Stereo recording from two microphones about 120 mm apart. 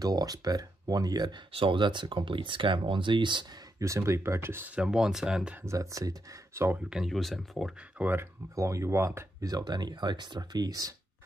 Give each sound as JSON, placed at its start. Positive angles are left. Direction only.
{"t": 0.0, "sound": "speech", "side_deg": -30}
{"t": 1.5, "sound": "speech", "side_deg": -45}
{"t": 3.8, "sound": "speech", "side_deg": -25}
{"t": 5.7, "sound": "speech", "side_deg": -25}
{"t": 6.9, "sound": "speech", "side_deg": 0}
{"t": 8.0, "sound": "speech", "side_deg": -15}